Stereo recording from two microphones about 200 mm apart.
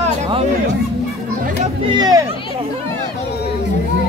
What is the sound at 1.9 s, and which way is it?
Speech, 20° right (ahead or behind).